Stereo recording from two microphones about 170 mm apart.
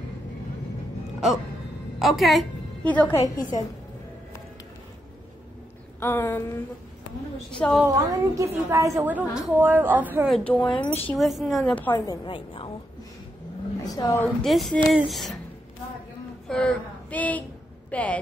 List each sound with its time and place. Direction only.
2.0 s a woman's voice: centre (ahead or behind)
5.9 s a sound: 10° left (ahead or behind)
7.5 s a woman's voice: 5° left (ahead or behind)
7.9 s a woman's voice: 20° right (ahead or behind)
10.3 s a woman's voice: 5° left (ahead or behind)
10.7 s speech: 35° left (ahead or behind)
11.1 s a woman's voice: centre (ahead or behind)
11.9 s a woman's voice: 30° left (ahead or behind)
13.8 s a woman's voice: 15° left (ahead or behind)
14.4 s a woman's voice: centre (ahead or behind)
16.4 s speech: 5° left (ahead or behind)
17.9 s a sound: 10° left (ahead or behind)